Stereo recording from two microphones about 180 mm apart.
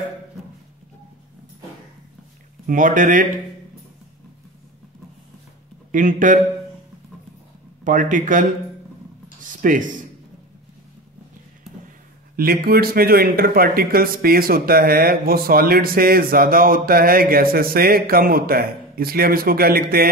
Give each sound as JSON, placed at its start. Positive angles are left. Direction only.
{"t": 2.6, "sound": "speech", "side_deg": -50}
{"t": 5.9, "sound": "a man's voice", "side_deg": -50}
{"t": 7.8, "sound": "speech", "side_deg": -45}
{"t": 12.4, "sound": "speech", "side_deg": -55}